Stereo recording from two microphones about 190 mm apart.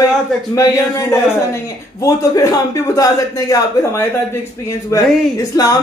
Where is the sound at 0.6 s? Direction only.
15° left (ahead or behind).